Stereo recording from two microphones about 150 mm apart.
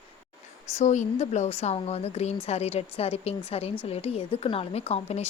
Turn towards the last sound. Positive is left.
turn(degrees=40)  # may be behind; listen again after turning